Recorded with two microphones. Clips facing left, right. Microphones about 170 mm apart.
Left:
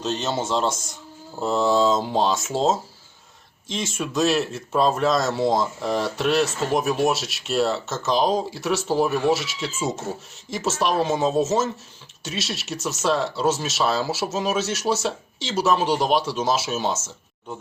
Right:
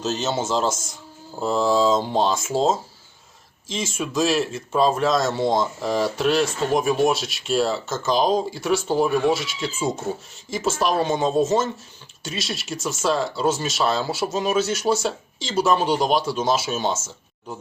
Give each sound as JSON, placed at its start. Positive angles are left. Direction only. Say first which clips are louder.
{"t": 0.0, "sound": "speech", "louder": "right 1 dB", "side_deg": 0}